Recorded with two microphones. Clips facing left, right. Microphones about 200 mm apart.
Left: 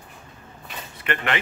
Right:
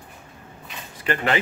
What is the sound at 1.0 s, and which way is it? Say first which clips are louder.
Speech: right 3 dB; 35° right (ahead or behind).